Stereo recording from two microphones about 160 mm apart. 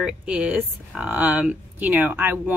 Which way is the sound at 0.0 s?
5° right (ahead or behind).